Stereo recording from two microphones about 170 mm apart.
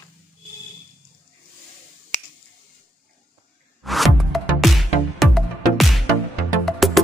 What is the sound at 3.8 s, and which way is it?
Music, centre (ahead or behind).